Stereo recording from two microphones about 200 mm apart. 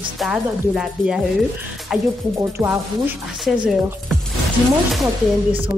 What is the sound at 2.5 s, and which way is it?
Speech, 15° right (ahead or behind).